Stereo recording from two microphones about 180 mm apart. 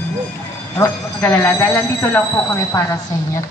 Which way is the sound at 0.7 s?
15° left (ahead or behind).